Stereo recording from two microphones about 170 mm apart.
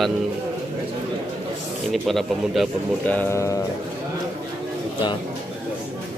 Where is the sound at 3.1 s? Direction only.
10° left (ahead or behind).